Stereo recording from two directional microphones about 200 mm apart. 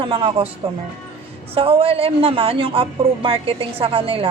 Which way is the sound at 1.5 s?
30° right (ahead or behind).